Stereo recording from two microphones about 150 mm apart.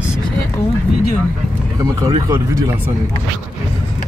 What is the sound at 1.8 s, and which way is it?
Speech, 25° right (ahead or behind).